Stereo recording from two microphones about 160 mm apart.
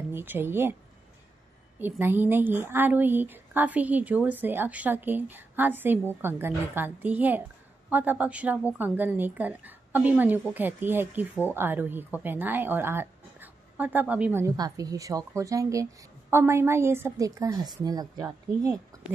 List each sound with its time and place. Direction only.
0.1 s a woman's voice: 15° right (ahead or behind)
1.8 s a woman's voice: 15° right (ahead or behind)
14.4 s speech: 20° right (ahead or behind)